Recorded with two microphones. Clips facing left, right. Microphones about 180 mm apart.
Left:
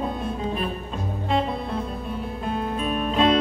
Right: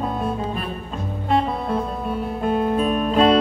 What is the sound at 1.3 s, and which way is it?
Music, 50° right (ahead or behind).